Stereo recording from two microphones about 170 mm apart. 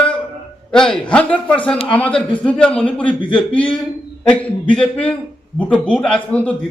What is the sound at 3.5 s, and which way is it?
A man's voice, 5° left (ahead or behind).